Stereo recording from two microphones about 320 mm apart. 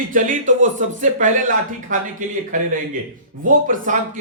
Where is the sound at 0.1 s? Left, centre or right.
Right.